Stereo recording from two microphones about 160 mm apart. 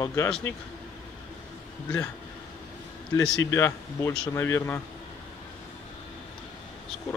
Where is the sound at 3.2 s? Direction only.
15° left (ahead or behind).